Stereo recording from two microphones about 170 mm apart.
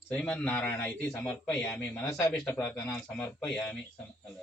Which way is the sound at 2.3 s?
5° left (ahead or behind).